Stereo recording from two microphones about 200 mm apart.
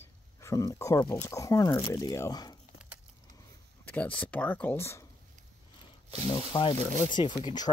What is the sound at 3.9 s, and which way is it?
Speech, 10° left (ahead or behind).